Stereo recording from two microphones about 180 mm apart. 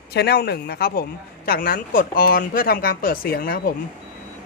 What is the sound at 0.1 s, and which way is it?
Speech, 65° left (ahead or behind).